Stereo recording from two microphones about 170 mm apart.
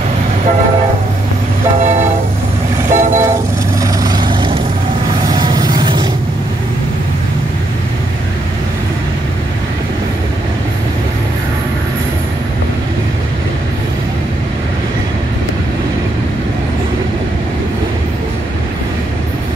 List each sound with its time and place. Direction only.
2.9 s vehicle: 50° right (ahead or behind)
3.8 s vehicle: 25° right (ahead or behind)